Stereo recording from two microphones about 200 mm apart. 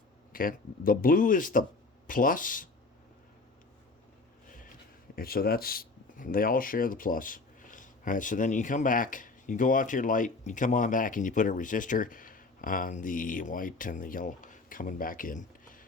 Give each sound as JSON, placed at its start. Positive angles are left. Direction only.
{"t": 0.3, "sound": "speech", "side_deg": 45}
{"t": 5.1, "sound": "speech", "side_deg": 50}